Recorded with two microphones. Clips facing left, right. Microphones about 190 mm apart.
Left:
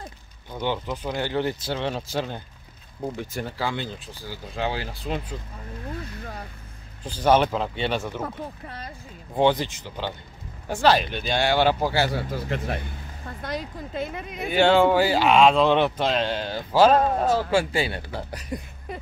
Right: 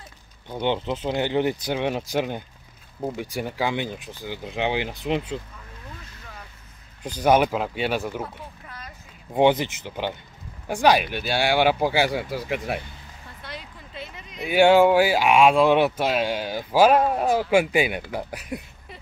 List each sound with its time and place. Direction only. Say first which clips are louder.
0.5 s speech: right 3 dB; 20° right (ahead or behind)
7.0 s speech: right 1 dB; 15° right (ahead or behind)
8.6 s speech: left 4 dB; 35° left (ahead or behind)
9.3 s speech: right 2 dB; 20° right (ahead or behind)
13.4 s a sound: left 9 dB; 45° left (ahead or behind)
14.5 s speech: right 3 dB; 10° right (ahead or behind)